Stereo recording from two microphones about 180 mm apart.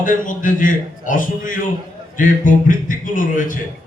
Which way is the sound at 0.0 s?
50° left (ahead or behind).